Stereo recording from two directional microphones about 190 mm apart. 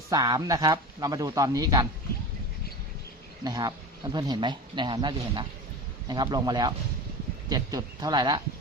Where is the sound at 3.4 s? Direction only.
20° right (ahead or behind).